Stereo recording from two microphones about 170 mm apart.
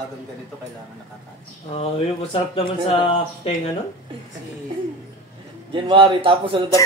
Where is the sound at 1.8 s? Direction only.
35° left (ahead or behind).